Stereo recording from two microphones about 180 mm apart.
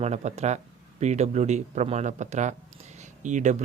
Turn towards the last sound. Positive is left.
turn(degrees=-40)  # may be behind; listen again after turning